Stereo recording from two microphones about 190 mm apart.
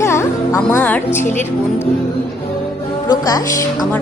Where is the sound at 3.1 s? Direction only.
20° left (ahead or behind).